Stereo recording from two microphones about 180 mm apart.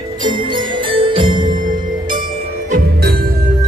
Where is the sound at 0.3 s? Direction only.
30° right (ahead or behind).